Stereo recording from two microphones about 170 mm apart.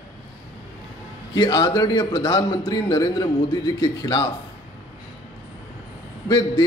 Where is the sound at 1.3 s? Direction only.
25° left (ahead or behind).